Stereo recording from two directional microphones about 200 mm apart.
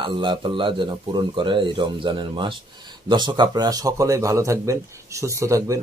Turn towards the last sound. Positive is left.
turn(degrees=-15)  # may be behind; listen again after turning